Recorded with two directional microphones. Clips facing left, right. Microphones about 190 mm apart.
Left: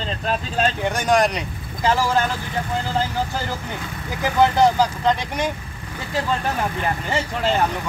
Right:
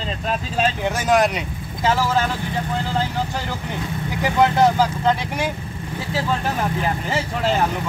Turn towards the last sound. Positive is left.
turn(degrees=0)  # may be behind; listen again after turning